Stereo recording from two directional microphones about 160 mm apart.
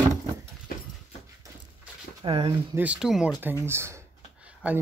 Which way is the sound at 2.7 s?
10° right (ahead or behind).